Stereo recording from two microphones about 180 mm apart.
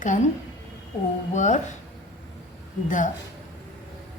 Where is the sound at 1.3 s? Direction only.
45° left (ahead or behind).